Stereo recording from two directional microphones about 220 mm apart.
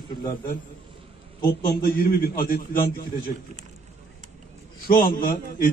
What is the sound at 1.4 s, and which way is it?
A man's voice, 45° left (ahead or behind).